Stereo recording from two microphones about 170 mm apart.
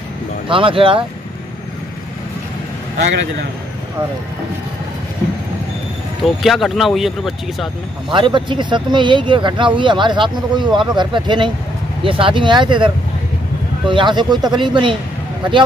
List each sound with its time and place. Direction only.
0.5 s speech: 30° right (ahead or behind)
6.2 s speech: centre (ahead or behind)
8.1 s speech: 30° right (ahead or behind)